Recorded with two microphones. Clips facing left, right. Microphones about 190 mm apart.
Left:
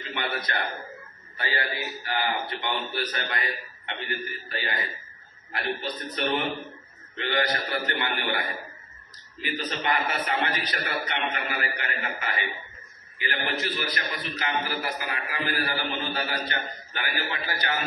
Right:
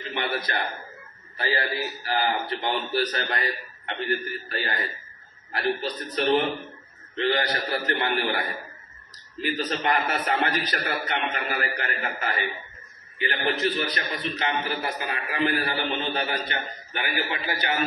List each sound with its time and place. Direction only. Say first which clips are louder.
0.1 s a sound: right 2 dB; 25° right (ahead or behind)
2.0 s a man's voice: right 3 dB; 35° right (ahead or behind)
13.2 s a man's voice: right 5 dB; 25° right (ahead or behind)